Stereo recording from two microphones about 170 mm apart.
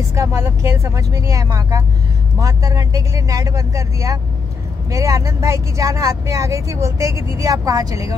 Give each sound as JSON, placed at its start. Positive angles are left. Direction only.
{"t": 0.1, "sound": "speech", "side_deg": -20}